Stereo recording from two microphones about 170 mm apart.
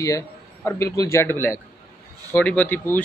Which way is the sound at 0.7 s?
15° left (ahead or behind).